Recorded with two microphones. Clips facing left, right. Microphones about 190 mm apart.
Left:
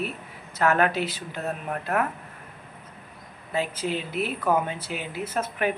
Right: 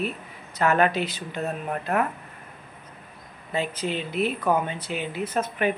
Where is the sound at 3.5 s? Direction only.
5° left (ahead or behind).